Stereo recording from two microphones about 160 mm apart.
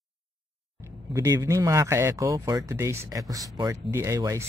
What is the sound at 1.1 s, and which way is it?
Speech, 20° right (ahead or behind).